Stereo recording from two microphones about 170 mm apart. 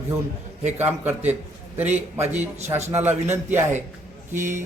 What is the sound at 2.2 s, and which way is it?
Speech, 40° right (ahead or behind).